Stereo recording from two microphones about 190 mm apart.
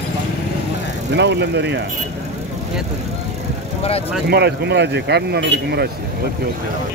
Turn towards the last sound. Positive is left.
turn(degrees=-60)  # may be behind; listen again after turning